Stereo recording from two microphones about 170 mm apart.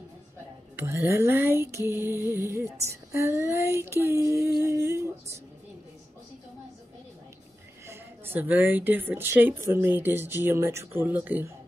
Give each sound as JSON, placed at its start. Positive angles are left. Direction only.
{"t": 0.8, "sound": "female singing", "side_deg": -15}
{"t": 7.8, "sound": "female singing", "side_deg": -15}